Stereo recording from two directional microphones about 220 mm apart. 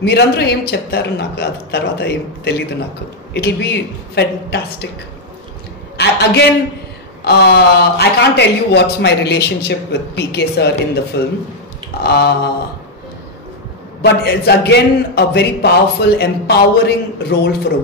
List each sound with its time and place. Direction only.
0.0 s a man's voice: 50° left (ahead or behind)
5.9 s a sound: 50° left (ahead or behind)
7.2 s a man's voice: 45° left (ahead or behind)
14.0 s a man's voice: 45° left (ahead or behind)